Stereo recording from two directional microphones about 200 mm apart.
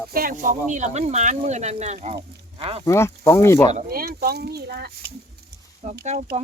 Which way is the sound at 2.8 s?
15° left (ahead or behind).